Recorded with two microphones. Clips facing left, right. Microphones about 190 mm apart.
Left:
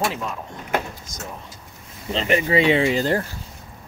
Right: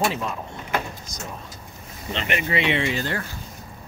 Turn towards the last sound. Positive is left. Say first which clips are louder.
# left 6 dB
turn(degrees=35)  # may be behind; listen again after turning